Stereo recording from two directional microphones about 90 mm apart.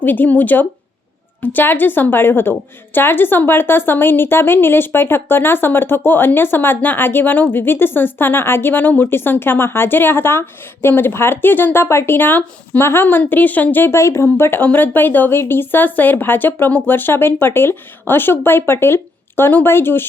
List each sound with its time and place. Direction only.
0.0 s a woman's voice: 20° left (ahead or behind)